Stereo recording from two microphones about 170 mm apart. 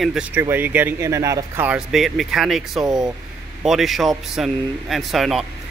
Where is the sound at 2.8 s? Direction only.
25° right (ahead or behind).